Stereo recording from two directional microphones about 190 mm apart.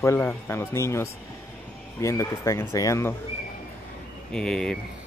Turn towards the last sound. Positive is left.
turn(degrees=5)  # may be behind; listen again after turning